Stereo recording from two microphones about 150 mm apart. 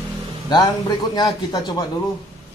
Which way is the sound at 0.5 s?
30° left (ahead or behind).